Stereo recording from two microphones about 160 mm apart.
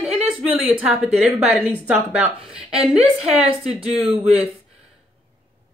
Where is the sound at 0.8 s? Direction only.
5° right (ahead or behind).